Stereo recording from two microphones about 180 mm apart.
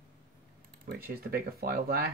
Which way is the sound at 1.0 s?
55° right (ahead or behind).